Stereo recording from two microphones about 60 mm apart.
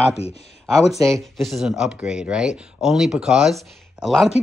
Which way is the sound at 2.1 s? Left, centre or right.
Centre.